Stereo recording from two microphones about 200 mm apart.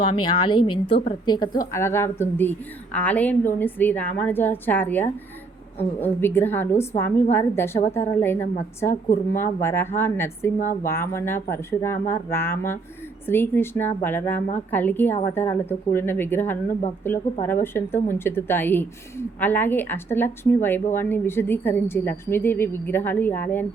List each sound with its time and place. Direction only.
0.0 s a woman's voice: 25° left (ahead or behind)